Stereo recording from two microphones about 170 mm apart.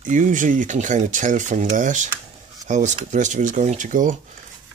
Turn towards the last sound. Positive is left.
turn(degrees=-50)  # may be behind; listen again after turning